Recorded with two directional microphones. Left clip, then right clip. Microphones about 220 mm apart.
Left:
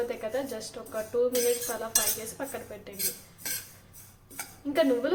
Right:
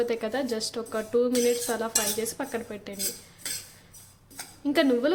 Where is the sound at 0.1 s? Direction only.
45° right (ahead or behind).